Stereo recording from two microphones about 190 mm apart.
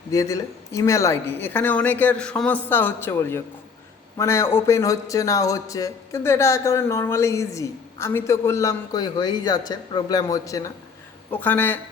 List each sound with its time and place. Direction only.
0.1 s a man's voice: 15° left (ahead or behind)